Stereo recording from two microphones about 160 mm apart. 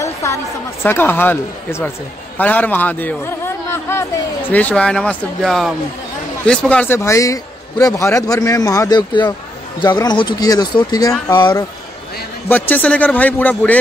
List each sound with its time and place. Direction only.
0.0 s a sound: 20° left (ahead or behind)
0.8 s a man's voice: 15° left (ahead or behind)
12.4 s a man's voice: 10° left (ahead or behind)